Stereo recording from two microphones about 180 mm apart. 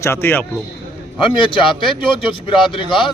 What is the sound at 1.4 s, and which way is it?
Speech, 25° left (ahead or behind).